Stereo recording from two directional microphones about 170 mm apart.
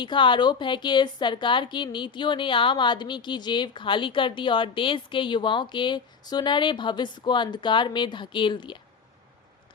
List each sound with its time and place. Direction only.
0.0 s a woman's voice: 30° left (ahead or behind)